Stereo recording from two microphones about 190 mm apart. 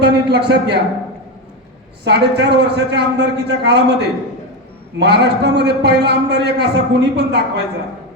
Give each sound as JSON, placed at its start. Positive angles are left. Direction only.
{"t": 0.0, "sound": "a man's voice", "side_deg": -60}
{"t": 2.0, "sound": "a man's voice", "side_deg": -60}